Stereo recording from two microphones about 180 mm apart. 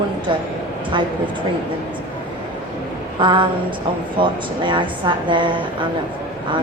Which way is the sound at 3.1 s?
25° right (ahead or behind).